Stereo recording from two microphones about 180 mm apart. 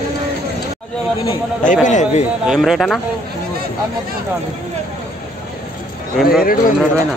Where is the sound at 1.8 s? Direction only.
40° left (ahead or behind).